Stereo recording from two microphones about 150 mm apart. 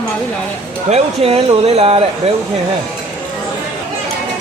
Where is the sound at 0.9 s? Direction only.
40° right (ahead or behind).